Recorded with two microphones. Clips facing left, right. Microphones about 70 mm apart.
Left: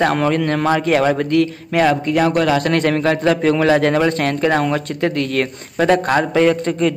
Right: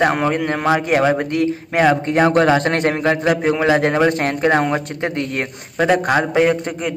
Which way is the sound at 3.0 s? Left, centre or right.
Centre.